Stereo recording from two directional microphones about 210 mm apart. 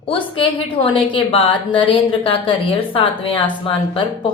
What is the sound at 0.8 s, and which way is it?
Speech, 25° left (ahead or behind).